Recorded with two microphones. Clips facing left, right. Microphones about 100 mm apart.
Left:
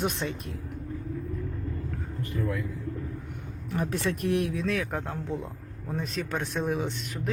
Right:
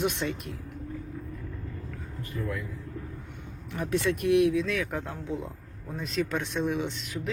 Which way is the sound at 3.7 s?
40° left (ahead or behind).